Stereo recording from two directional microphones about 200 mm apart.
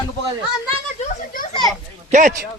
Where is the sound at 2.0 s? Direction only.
40° right (ahead or behind).